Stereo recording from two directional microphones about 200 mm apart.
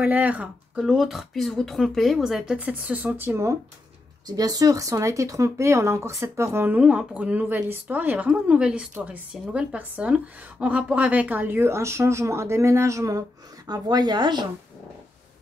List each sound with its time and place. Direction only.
0.0 s speech: 10° right (ahead or behind)